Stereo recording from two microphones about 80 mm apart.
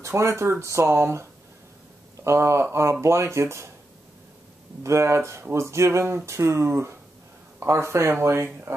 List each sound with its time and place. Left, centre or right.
0.0 s speech: right
2.2 s speech: right
4.8 s speech: right